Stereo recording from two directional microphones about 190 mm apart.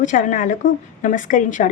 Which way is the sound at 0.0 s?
45° left (ahead or behind).